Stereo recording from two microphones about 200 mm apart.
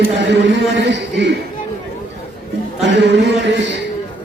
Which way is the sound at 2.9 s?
60° right (ahead or behind).